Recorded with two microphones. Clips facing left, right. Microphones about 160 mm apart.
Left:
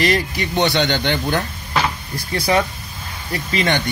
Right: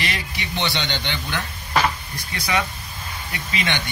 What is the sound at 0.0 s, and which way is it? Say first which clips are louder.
Speech: left 10 dB; 45° left (ahead or behind).